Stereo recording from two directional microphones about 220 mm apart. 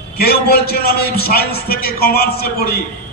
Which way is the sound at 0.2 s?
45° left (ahead or behind).